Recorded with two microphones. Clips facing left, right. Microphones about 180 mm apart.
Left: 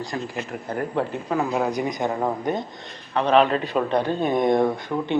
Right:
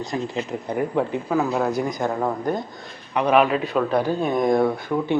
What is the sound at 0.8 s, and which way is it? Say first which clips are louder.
Speech: right 3 dB; 10° right (ahead or behind).